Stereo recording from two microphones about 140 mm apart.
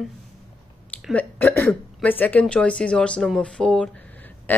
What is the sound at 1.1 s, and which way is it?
Speech, 10° left (ahead or behind).